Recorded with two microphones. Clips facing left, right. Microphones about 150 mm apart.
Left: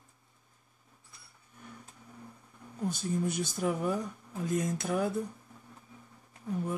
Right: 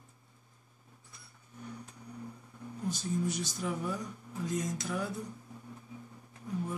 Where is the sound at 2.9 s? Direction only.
55° left (ahead or behind).